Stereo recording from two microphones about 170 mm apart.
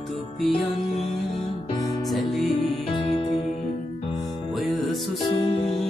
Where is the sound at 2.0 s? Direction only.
Centre (ahead or behind).